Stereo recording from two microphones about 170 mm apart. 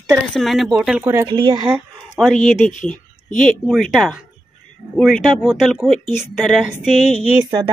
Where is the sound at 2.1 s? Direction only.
Centre (ahead or behind).